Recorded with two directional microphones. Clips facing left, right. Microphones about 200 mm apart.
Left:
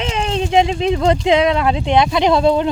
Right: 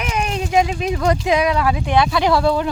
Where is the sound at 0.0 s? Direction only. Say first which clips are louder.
Left 3 dB; 25° left (ahead or behind).